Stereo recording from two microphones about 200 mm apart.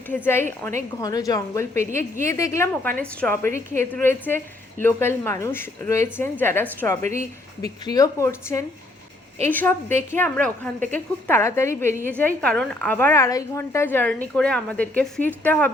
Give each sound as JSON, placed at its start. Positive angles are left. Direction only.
{"t": 0.3, "sound": "speech", "side_deg": 10}